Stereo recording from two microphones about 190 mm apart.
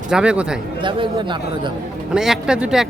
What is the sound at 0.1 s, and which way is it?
Speech, 5° right (ahead or behind).